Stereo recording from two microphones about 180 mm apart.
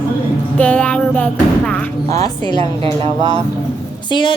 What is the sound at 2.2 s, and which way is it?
Speech, 25° left (ahead or behind).